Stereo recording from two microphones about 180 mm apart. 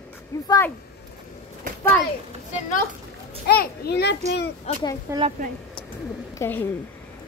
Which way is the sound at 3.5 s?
60° left (ahead or behind).